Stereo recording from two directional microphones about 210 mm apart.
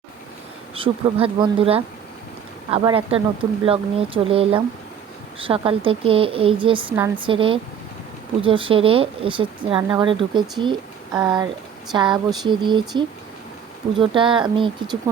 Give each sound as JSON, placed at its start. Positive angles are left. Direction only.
{"t": 0.7, "sound": "speech", "side_deg": -25}